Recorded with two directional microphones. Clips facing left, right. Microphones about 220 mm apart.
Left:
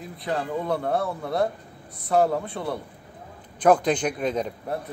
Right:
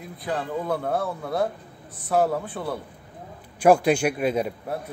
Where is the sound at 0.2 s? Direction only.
Centre (ahead or behind).